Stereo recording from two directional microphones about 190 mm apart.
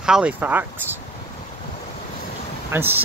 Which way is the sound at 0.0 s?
5° right (ahead or behind).